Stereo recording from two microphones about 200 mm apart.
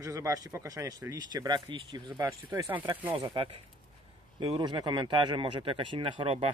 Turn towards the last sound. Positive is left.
turn(degrees=-25)  # may be behind; listen again after turning